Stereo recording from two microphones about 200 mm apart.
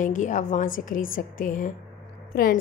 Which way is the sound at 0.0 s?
40° left (ahead or behind).